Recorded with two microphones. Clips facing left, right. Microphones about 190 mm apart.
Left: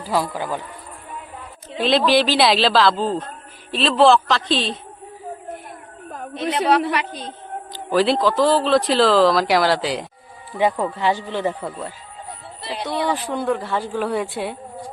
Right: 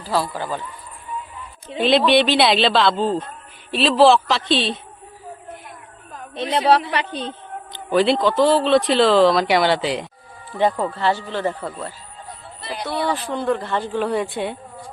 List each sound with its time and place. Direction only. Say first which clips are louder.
0.0 s a woman's voice: even; 15° left (ahead or behind)
1.8 s a man's voice: right 1 dB; centre (ahead or behind)
6.1 s a sound: left 5 dB; 50° left (ahead or behind)
6.3 s a woman's voice: right 1 dB; 30° right (ahead or behind)
7.7 s a man's voice: right 1 dB; centre (ahead or behind)
13.0 s a woman's voice: even; 15° left (ahead or behind)